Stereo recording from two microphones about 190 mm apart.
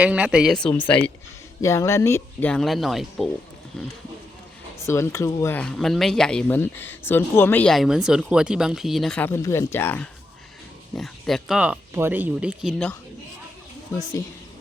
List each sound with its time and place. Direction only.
0.0 s speech: 5° right (ahead or behind)
4.9 s speech: 15° left (ahead or behind); by 12.7 s 5° right (ahead or behind)